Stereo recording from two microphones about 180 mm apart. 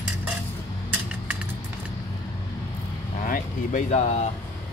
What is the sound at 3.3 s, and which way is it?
Speech, 40° left (ahead or behind).